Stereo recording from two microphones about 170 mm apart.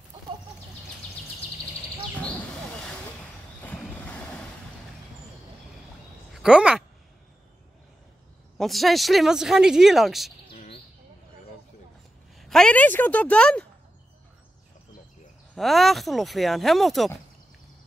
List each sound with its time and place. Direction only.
3.6 s vehicle: 5° left (ahead or behind)
6.3 s speech: 5° right (ahead or behind)
8.5 s speech: centre (ahead or behind)
10.5 s bird: 35° left (ahead or behind)
12.4 s a woman's voice: centre (ahead or behind)
15.5 s speech: centre (ahead or behind)